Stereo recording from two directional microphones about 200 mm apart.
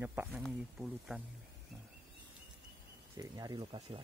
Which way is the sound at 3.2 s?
20° right (ahead or behind).